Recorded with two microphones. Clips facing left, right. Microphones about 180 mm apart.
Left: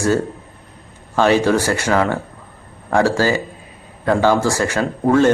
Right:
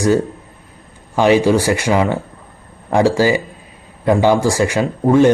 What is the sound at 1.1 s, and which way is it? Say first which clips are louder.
Speech: right 2 dB; 15° right (ahead or behind).